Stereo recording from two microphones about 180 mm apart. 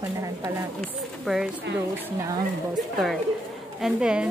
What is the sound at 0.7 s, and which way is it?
Speech, centre (ahead or behind).